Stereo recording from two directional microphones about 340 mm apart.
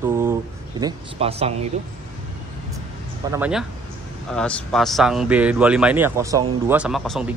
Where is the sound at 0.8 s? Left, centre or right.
Centre.